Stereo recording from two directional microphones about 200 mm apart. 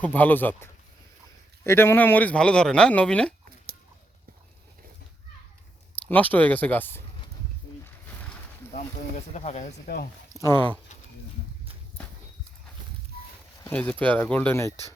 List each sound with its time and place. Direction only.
0.0 s speech: 10° left (ahead or behind)
6.1 s speech: 10° left (ahead or behind)
8.7 s speech: 35° left (ahead or behind)
9.8 s speech: 50° left (ahead or behind)
13.7 s speech: 5° left (ahead or behind)